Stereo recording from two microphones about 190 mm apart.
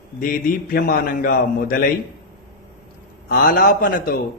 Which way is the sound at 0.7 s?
45° left (ahead or behind).